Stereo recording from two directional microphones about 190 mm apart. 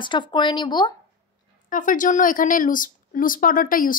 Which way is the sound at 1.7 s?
45° left (ahead or behind).